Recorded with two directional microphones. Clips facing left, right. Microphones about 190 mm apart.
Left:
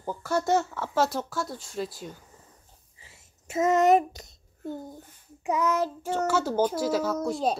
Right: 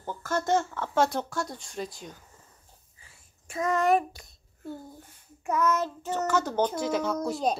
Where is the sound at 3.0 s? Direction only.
25° left (ahead or behind).